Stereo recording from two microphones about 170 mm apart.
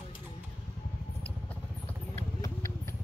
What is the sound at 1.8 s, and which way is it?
Vehicle, 15° left (ahead or behind).